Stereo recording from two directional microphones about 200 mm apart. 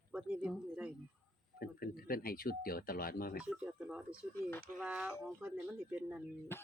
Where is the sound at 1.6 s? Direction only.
50° left (ahead or behind).